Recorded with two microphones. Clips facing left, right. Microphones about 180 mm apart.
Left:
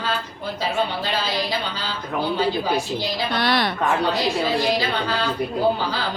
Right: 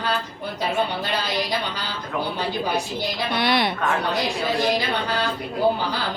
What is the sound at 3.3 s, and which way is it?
Speech, 20° right (ahead or behind).